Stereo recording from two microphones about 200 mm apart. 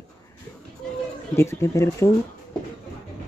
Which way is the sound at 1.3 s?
15° left (ahead or behind).